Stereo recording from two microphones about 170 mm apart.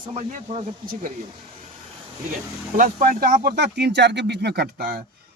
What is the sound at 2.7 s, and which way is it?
Speech, 55° right (ahead or behind).